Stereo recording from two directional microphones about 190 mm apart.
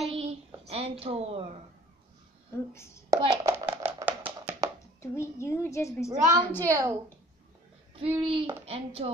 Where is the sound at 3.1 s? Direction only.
15° right (ahead or behind).